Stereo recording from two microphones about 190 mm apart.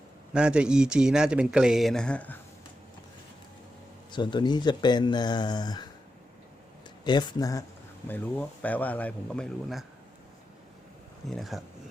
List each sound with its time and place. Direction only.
0.3 s speech: 5° right (ahead or behind)
4.1 s speech: 25° left (ahead or behind)
7.0 s speech: 25° left (ahead or behind)
8.0 s speech: 10° left (ahead or behind)
11.3 s speech: centre (ahead or behind)